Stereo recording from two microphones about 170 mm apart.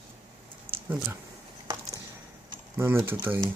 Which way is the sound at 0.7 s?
35° right (ahead or behind).